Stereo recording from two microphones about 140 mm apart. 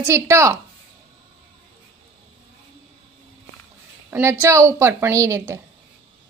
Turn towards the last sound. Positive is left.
turn(degrees=-20)  # may be behind; listen again after turning